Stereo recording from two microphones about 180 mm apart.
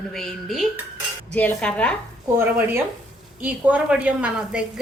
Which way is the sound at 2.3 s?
10° right (ahead or behind).